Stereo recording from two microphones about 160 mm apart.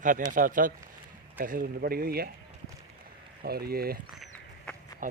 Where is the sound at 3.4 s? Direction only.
75° right (ahead or behind).